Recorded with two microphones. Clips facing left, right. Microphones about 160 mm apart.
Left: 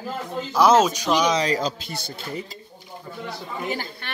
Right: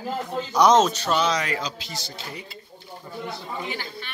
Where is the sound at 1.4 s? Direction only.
40° left (ahead or behind).